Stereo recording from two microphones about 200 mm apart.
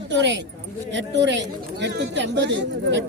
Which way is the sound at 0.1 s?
60° right (ahead or behind).